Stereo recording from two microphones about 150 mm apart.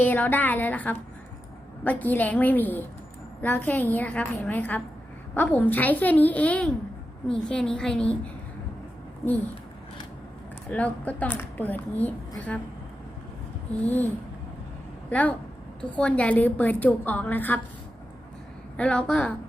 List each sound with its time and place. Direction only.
0.0 s a woman's voice: 15° left (ahead or behind)
10.7 s a woman's voice: 10° left (ahead or behind)
13.8 s a woman's voice: 10° left (ahead or behind)
15.1 s a woman's voice: 10° left (ahead or behind)
18.8 s a woman's voice: 5° left (ahead or behind)